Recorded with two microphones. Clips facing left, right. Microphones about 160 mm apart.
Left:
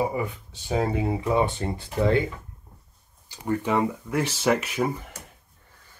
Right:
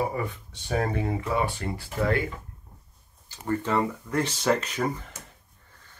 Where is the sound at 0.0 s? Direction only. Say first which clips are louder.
Left 2 dB; 15° left (ahead or behind).